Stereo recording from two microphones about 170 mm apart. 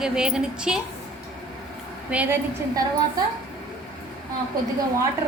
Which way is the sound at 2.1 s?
10° right (ahead or behind).